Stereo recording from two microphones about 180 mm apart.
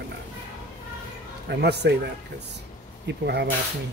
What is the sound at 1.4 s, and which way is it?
Speech, 70° right (ahead or behind).